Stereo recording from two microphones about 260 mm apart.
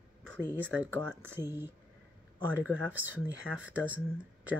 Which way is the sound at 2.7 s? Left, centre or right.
Centre.